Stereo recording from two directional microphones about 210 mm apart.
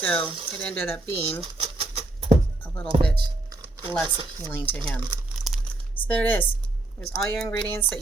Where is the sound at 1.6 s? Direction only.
30° right (ahead or behind).